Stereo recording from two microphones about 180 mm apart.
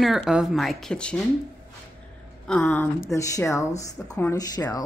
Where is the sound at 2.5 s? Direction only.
10° left (ahead or behind).